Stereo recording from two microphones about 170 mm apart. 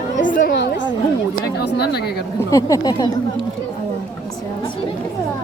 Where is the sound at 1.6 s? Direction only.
70° left (ahead or behind).